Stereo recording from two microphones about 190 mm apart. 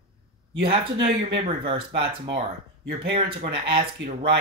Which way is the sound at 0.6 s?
30° right (ahead or behind).